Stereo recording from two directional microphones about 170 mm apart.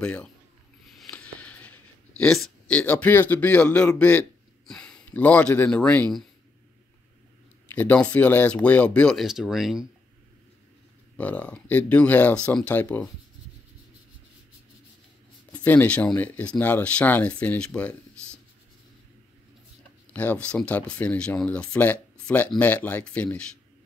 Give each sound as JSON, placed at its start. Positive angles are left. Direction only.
{"t": 0.0, "sound": "speech", "side_deg": 5}
{"t": 0.8, "sound": "a sound", "side_deg": 5}
{"t": 4.0, "sound": "speech", "side_deg": 10}
{"t": 7.7, "sound": "speech", "side_deg": 10}
{"t": 11.1, "sound": "speech", "side_deg": 10}
{"t": 15.5, "sound": "speech", "side_deg": 10}
{"t": 20.1, "sound": "speech", "side_deg": 10}